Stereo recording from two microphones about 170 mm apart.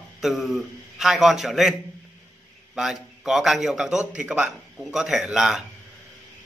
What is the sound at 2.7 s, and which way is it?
Speech, centre (ahead or behind).